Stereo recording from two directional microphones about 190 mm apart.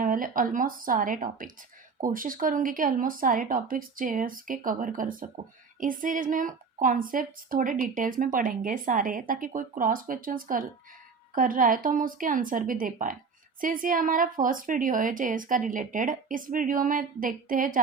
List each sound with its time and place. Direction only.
0.0 s a woman's voice: 45° right (ahead or behind)